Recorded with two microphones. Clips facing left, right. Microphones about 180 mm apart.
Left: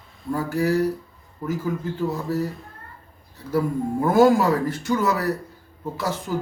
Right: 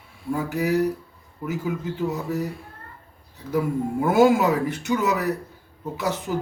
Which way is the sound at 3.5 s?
5° right (ahead or behind).